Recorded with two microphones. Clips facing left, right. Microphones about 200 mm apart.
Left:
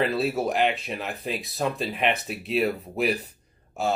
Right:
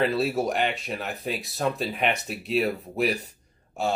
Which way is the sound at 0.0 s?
Centre (ahead or behind).